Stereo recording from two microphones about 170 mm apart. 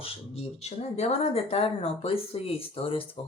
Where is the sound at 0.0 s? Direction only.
40° left (ahead or behind).